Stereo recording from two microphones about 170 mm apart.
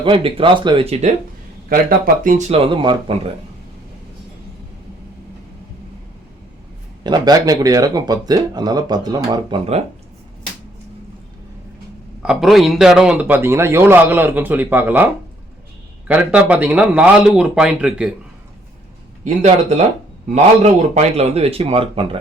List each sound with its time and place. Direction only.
0.0 s speech: 30° right (ahead or behind)
1.7 s speech: 60° right (ahead or behind)
2.5 s speech: 30° right (ahead or behind)
7.0 s speech: 25° right (ahead or behind)
12.2 s a man's voice: 5° right (ahead or behind)
16.0 s speech: 10° right (ahead or behind)
19.2 s a man's voice: 40° right (ahead or behind)